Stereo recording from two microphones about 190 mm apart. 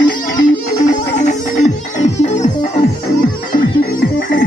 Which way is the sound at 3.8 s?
50° left (ahead or behind).